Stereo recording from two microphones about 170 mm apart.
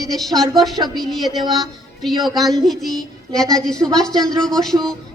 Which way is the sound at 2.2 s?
Centre (ahead or behind).